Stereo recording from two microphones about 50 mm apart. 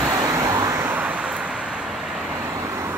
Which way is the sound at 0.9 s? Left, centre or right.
Right.